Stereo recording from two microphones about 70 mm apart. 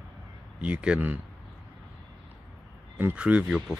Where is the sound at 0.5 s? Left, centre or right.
Centre.